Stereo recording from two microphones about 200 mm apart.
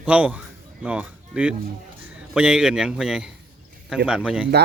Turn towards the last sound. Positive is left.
turn(degrees=-5)  # may be behind; listen again after turning